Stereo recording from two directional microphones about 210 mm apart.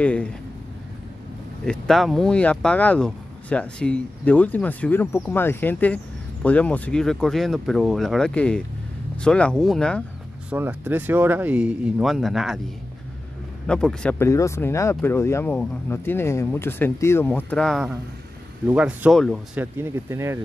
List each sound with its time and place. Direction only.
0.0 s speech: 5° left (ahead or behind)
1.7 s speech: centre (ahead or behind)
10.5 s speech: 10° right (ahead or behind)
13.7 s speech: 5° left (ahead or behind); by 20.3 s 15° right (ahead or behind)